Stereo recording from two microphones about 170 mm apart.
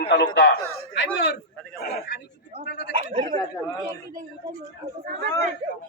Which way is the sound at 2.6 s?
75° left (ahead or behind).